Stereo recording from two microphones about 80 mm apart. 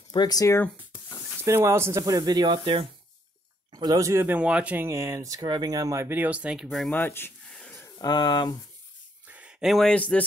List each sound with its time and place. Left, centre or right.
0.1 s speech: left
1.4 s speech: right
2.0 s speech: right
3.7 s speech: right
4.3 s speech: centre
4.8 s speech: right
5.9 s speech: right
6.5 s speech: centre
6.9 s speech: left
7.4 s a sound: centre
8.0 s speech: left
9.3 s a sound: centre
9.7 s speech: centre
9.9 s speech: centre